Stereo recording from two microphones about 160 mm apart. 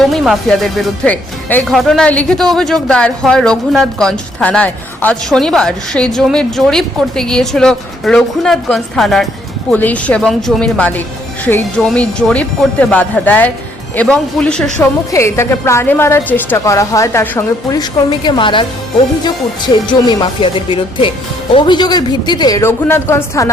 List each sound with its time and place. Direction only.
0.0 s a woman's voice: centre (ahead or behind)
15.1 s a woman's voice: 15° left (ahead or behind)